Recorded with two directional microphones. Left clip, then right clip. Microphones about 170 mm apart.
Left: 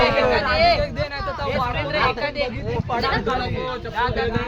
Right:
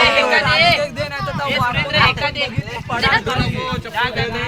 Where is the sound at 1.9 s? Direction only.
40° left (ahead or behind).